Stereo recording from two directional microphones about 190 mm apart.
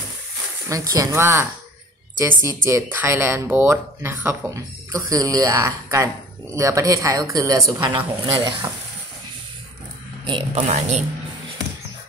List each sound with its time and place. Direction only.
0.7 s speech: 20° right (ahead or behind)
10.2 s a man's voice: 30° right (ahead or behind)